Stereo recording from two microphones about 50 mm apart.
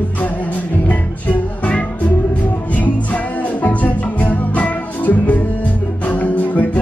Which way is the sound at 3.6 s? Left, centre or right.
Left.